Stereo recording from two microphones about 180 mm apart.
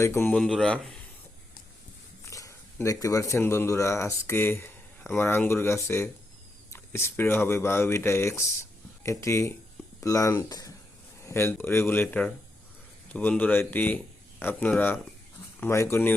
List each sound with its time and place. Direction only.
0.0 s speech: 10° left (ahead or behind)
2.3 s speech: 15° left (ahead or behind)